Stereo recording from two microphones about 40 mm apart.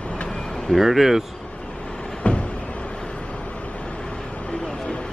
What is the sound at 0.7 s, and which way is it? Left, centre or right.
Speech, centre.